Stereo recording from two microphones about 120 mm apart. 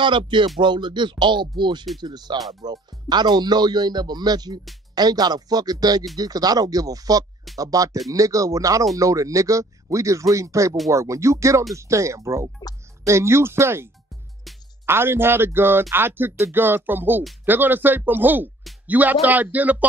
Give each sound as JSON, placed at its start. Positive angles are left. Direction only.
{"t": 0.0, "sound": "music", "side_deg": -40}
{"t": 0.6, "sound": "speech", "side_deg": -40}
{"t": 14.9, "sound": "speech", "side_deg": -20}